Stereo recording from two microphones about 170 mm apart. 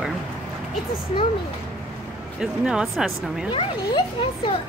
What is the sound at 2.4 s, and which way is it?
Speech, 5° right (ahead or behind).